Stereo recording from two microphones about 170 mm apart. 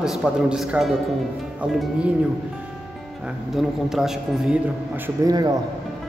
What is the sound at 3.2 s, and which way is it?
A man's voice, centre (ahead or behind).